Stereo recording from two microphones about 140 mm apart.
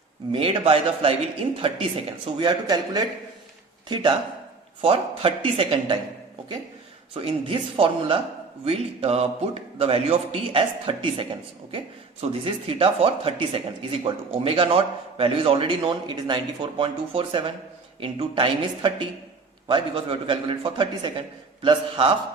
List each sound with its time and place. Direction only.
0.3 s a man's voice: 40° right (ahead or behind)
7.1 s a man's voice: 40° right (ahead or behind)